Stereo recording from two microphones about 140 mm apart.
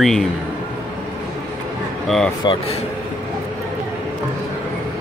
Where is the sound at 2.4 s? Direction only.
35° left (ahead or behind).